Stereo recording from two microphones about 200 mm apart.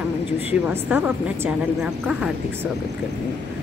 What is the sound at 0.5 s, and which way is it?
A woman's voice, 5° right (ahead or behind).